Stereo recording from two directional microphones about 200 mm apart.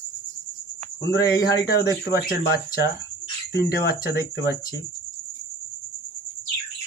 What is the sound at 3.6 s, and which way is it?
Speech, 55° left (ahead or behind).